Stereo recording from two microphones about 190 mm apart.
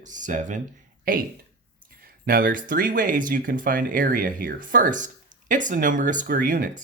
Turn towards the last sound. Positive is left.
turn(degrees=-45)  # may be behind; listen again after turning